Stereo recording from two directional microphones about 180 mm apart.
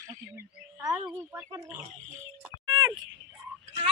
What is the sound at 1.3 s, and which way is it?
Pig, 10° right (ahead or behind).